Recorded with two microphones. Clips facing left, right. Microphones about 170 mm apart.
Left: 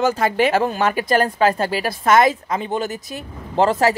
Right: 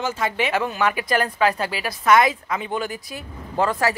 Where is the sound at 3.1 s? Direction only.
25° left (ahead or behind).